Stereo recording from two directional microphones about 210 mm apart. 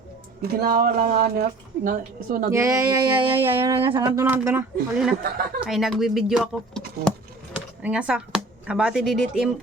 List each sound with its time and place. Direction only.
0.4 s a woman's voice: 45° right (ahead or behind)
2.5 s speech: 15° right (ahead or behind)